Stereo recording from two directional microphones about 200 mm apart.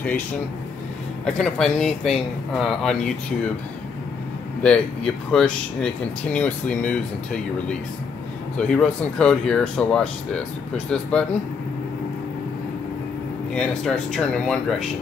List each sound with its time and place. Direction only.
1.2 s speech: 5° left (ahead or behind)
4.6 s speech: 5° left (ahead or behind)
8.5 s speech: 5° left (ahead or behind)
13.6 s speech: 5° left (ahead or behind)